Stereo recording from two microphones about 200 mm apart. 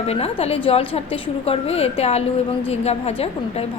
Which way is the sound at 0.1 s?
30° left (ahead or behind).